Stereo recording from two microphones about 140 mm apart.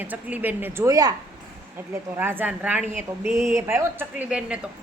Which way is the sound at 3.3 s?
Centre (ahead or behind).